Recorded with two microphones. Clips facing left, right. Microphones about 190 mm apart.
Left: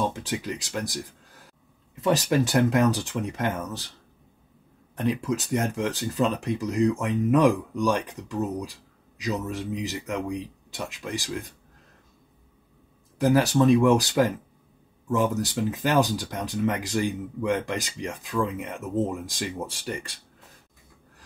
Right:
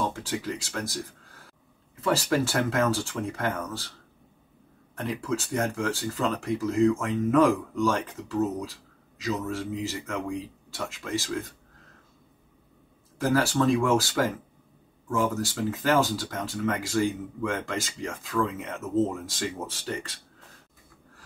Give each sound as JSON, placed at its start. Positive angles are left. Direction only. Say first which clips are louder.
{"t": 0.1, "sound": "speech", "louder": "left 1 dB", "side_deg": 20}
{"t": 4.9, "sound": "speech", "louder": "left 4 dB", "side_deg": 20}
{"t": 13.2, "sound": "speech", "louder": "left 3 dB", "side_deg": 20}